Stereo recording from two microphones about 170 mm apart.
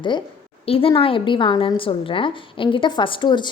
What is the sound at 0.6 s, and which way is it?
A woman's voice, 35° left (ahead or behind).